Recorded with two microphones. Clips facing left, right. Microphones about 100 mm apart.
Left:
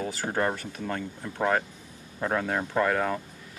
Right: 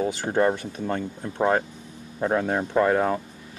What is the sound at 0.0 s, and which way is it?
Speech, 20° right (ahead or behind).